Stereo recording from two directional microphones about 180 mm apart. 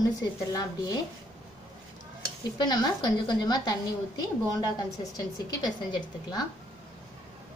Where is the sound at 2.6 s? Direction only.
25° left (ahead or behind).